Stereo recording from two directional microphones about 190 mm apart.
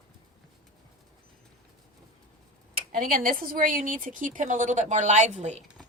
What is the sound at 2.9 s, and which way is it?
A woman's voice, 45° right (ahead or behind).